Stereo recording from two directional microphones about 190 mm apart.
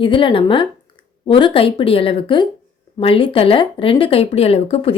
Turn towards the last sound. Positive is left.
turn(degrees=30)  # may be behind; listen again after turning